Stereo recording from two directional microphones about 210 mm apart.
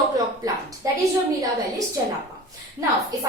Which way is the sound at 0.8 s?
15° right (ahead or behind).